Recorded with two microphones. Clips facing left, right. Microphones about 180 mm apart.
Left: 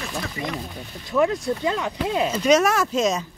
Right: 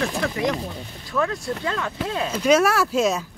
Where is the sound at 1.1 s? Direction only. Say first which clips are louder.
Left 4 dB; 20° left (ahead or behind).